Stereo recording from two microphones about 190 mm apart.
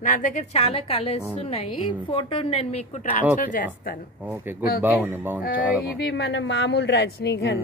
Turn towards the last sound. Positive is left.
turn(degrees=60)  # may be behind; listen again after turning